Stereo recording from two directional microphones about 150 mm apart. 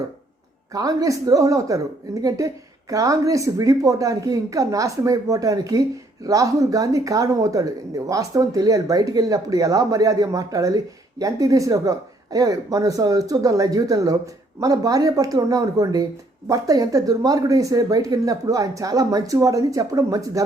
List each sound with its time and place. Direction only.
0.7 s speech: 25° right (ahead or behind)